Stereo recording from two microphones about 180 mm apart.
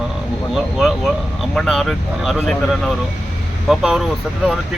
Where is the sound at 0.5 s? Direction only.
Centre (ahead or behind).